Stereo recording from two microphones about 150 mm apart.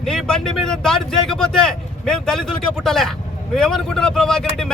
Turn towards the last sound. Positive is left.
turn(degrees=5)  # may be behind; listen again after turning